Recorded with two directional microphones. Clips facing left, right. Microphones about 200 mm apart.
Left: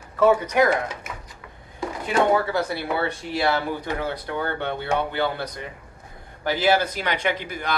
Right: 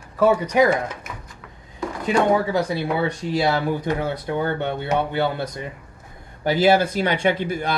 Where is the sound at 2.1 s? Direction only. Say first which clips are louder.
Right 2 dB; 15° right (ahead or behind).